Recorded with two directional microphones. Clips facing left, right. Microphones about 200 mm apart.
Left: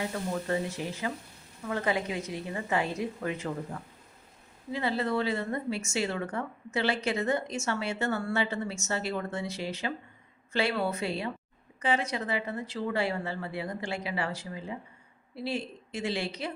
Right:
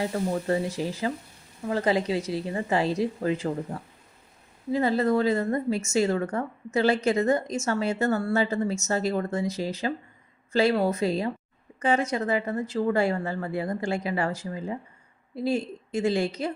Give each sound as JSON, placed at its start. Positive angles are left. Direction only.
{"t": 0.0, "sound": "speech", "side_deg": -35}